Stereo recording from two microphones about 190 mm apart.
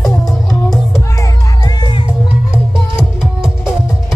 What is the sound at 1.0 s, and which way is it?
Music, 15° left (ahead or behind).